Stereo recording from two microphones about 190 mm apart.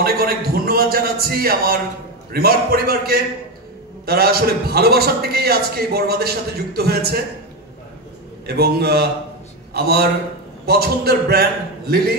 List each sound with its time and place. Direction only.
0.0 s a man's voice: 50° right (ahead or behind)
8.5 s a man's voice: 55° right (ahead or behind)